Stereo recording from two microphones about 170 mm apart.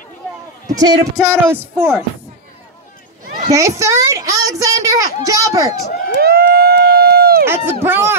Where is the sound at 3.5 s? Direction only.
15° right (ahead or behind).